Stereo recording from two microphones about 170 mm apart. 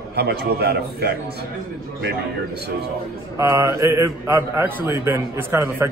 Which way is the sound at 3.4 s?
15° right (ahead or behind).